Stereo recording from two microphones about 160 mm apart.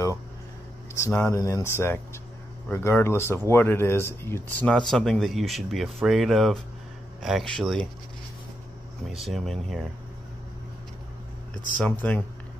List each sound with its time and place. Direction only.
1.0 s speech: 15° left (ahead or behind)
9.1 s speech: centre (ahead or behind)
11.8 s speech: 10° left (ahead or behind)